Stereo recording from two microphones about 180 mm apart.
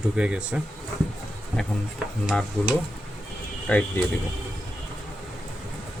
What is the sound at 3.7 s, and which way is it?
Speech, 10° left (ahead or behind).